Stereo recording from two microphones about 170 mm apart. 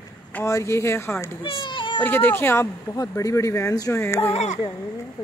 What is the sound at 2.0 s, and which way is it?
Speech, 10° left (ahead or behind).